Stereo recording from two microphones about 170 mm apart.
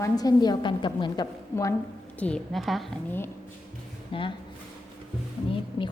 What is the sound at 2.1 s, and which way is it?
Speech, 5° left (ahead or behind).